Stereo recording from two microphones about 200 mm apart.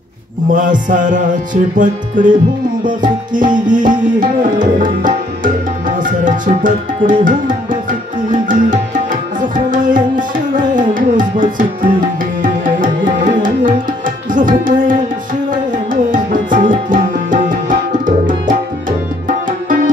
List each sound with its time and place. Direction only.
0.5 s music: 40° right (ahead or behind)
2.8 s tabla: 40° right (ahead or behind)
8.3 s music: 40° right (ahead or behind)
9.7 s tabla: 40° right (ahead or behind)
15.5 s music: 40° right (ahead or behind)
18.9 s tabla: 40° right (ahead or behind)